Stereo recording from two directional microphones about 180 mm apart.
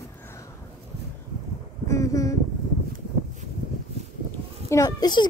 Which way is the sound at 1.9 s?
15° left (ahead or behind).